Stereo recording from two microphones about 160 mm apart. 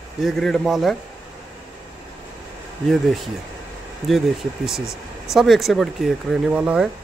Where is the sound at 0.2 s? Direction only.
Centre (ahead or behind).